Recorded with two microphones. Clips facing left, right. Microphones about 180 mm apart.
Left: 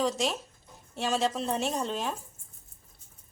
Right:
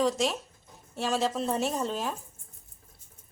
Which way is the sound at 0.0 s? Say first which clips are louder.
Right 2 dB; centre (ahead or behind).